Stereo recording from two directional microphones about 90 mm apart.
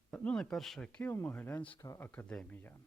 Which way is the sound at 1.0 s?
20° left (ahead or behind).